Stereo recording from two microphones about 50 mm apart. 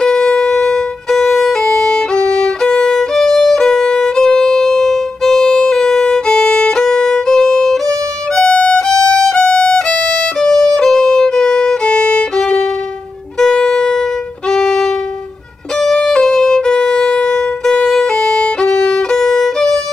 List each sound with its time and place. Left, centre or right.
0.0 s music: centre
6.8 s violin: centre
13.4 s music: centre
14.5 s violin: centre